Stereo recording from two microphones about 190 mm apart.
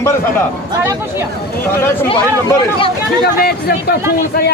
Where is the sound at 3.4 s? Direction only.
55° left (ahead or behind).